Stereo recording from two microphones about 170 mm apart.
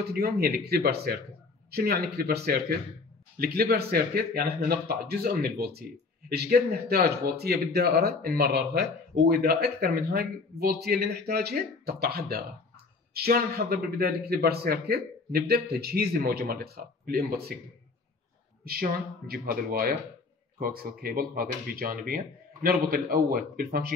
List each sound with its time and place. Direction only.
0.1 s a man's voice: 65° right (ahead or behind)
18.6 s a man's voice: 60° right (ahead or behind)